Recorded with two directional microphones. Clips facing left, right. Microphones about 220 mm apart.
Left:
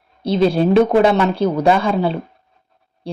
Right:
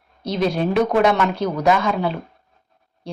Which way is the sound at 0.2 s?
30° left (ahead or behind).